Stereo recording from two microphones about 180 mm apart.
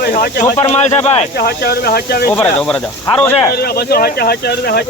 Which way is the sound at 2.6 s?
5° left (ahead or behind).